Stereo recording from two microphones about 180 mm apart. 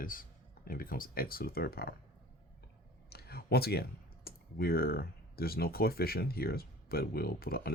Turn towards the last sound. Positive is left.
turn(degrees=55)  # may be behind; listen again after turning